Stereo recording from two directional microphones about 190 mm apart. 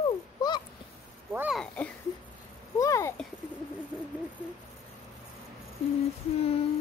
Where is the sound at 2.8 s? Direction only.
15° left (ahead or behind).